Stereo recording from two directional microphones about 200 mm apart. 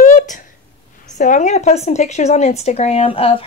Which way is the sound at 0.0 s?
40° left (ahead or behind).